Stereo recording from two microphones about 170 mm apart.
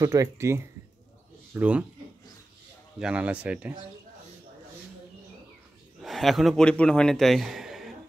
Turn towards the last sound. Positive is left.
turn(degrees=0)  # may be behind; listen again after turning